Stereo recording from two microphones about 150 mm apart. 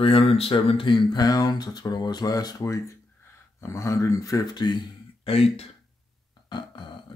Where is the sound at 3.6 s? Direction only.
25° left (ahead or behind).